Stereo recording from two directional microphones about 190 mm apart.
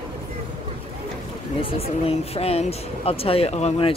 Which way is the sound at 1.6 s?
30° left (ahead or behind).